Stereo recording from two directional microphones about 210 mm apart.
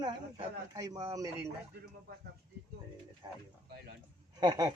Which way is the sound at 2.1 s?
45° right (ahead or behind).